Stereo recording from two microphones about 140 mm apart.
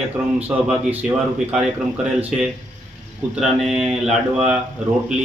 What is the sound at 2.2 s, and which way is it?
Mantra, 5° right (ahead or behind).